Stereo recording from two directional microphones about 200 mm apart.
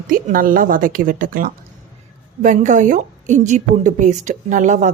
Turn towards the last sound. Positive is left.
turn(degrees=-35)  # may be behind; listen again after turning